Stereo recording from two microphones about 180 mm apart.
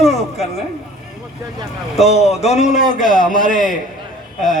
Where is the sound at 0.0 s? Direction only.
35° left (ahead or behind).